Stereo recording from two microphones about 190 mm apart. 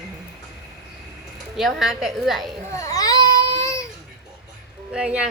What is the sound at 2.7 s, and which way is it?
Baby cry, 20° left (ahead or behind).